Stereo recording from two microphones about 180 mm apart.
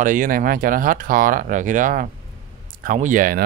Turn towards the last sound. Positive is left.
turn(degrees=-50)  # may be behind; listen again after turning